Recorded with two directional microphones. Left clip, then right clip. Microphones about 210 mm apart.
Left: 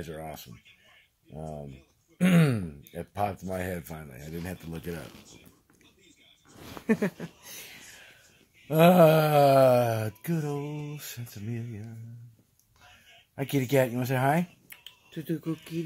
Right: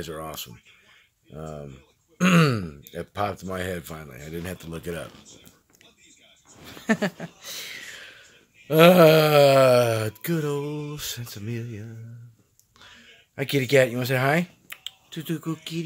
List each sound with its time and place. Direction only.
0.0 s speech: 5° right (ahead or behind)
6.9 s speech: 10° right (ahead or behind)
10.6 s a sound: 30° right (ahead or behind)
11.0 s speech: 10° right (ahead or behind)
13.3 s speech: 5° right (ahead or behind)